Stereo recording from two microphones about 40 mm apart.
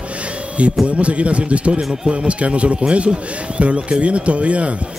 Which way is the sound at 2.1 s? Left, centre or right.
Right.